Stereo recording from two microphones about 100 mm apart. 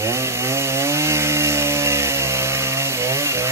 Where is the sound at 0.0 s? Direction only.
25° right (ahead or behind).